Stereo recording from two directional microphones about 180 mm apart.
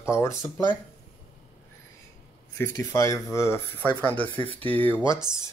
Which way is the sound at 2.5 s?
15° left (ahead or behind).